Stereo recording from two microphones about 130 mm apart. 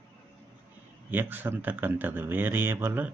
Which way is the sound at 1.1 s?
15° right (ahead or behind).